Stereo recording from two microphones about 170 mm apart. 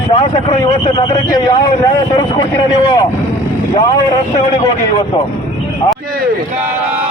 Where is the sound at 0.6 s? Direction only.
25° left (ahead or behind).